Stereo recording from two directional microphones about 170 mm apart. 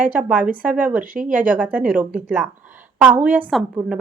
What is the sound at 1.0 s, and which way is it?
Speech, 55° right (ahead or behind).